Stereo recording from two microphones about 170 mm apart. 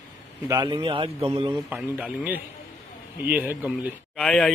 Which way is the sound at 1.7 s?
5° right (ahead or behind).